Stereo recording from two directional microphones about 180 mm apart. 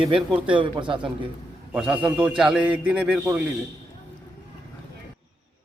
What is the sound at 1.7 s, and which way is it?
A man's voice, 5° right (ahead or behind).